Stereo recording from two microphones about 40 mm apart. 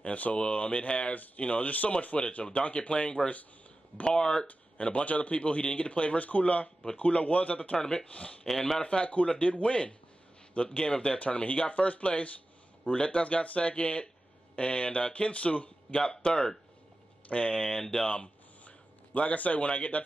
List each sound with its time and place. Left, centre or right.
0.0 s speech: left
1.1 s speech: left
7.7 s speech: centre
8.0 s speech: left
8.5 s speech: centre
8.8 s speech: left
15.9 s speech: left
17.3 s speech: left
17.6 s speech: centre
18.0 s a sound: left
19.1 s speech: left